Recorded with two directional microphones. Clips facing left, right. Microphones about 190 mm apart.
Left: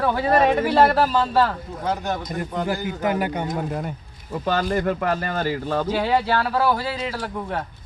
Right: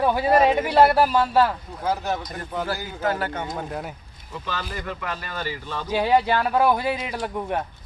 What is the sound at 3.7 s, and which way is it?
Speech, centre (ahead or behind).